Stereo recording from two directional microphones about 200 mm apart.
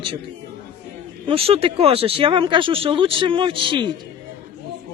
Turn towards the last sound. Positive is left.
turn(degrees=-25)  # may be behind; listen again after turning